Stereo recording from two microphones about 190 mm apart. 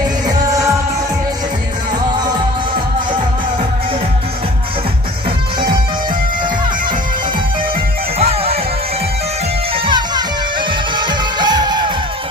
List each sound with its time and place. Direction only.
0.3 s music: 15° right (ahead or behind)
8.2 s music: 35° right (ahead or behind)
9.8 s music: 25° right (ahead or behind)